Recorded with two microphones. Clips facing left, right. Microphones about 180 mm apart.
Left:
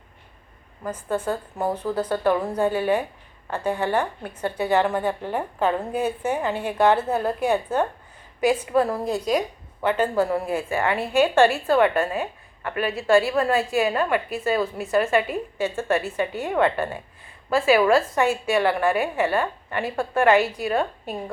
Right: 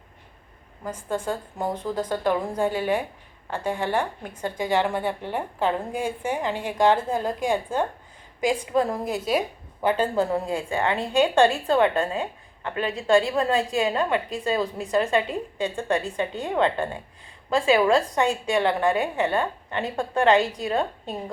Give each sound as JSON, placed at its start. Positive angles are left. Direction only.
{"t": 0.9, "sound": "a woman's voice", "side_deg": -10}